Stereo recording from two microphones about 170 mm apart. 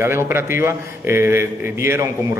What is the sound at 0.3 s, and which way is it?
A man's voice, 15° right (ahead or behind).